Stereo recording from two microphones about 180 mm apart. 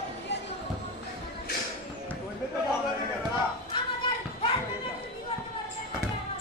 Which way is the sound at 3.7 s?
30° left (ahead or behind).